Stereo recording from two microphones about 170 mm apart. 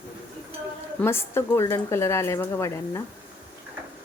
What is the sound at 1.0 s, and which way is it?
Speech, 15° left (ahead or behind).